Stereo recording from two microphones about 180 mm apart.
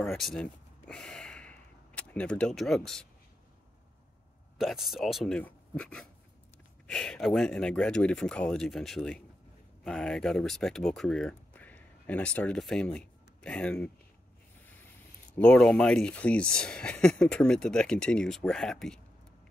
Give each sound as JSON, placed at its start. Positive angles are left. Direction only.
{"t": 0.0, "sound": "a sound", "side_deg": 0}
{"t": 4.6, "sound": "speech", "side_deg": 0}
{"t": 15.3, "sound": "speech", "side_deg": 5}